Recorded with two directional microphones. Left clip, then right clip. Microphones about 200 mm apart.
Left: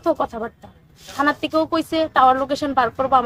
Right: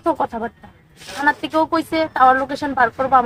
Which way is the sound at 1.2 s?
25° left (ahead or behind).